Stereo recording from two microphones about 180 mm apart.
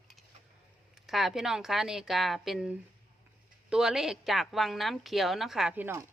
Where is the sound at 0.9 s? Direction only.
Centre (ahead or behind).